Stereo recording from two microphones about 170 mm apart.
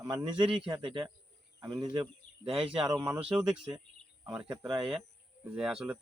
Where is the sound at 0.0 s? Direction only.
25° right (ahead or behind).